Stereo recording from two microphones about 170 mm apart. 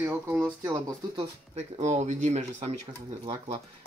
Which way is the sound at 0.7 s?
25° right (ahead or behind).